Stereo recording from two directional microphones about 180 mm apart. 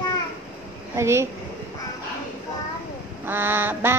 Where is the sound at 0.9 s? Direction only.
15° right (ahead or behind).